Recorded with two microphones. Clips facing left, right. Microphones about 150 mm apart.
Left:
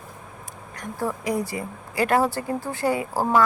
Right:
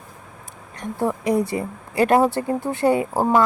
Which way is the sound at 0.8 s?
25° right (ahead or behind).